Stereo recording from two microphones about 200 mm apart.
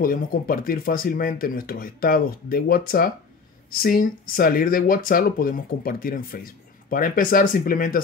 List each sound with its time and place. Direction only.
0.0 s speech: 45° left (ahead or behind)